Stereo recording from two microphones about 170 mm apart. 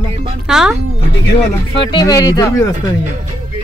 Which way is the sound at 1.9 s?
25° left (ahead or behind).